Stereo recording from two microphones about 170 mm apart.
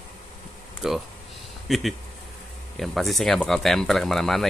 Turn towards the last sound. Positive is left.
turn(degrees=0)  # may be behind; listen again after turning